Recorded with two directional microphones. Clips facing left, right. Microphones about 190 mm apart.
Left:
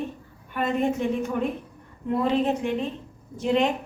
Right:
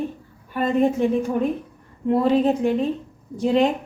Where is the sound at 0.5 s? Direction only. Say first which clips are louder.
Right 5 dB; 35° right (ahead or behind).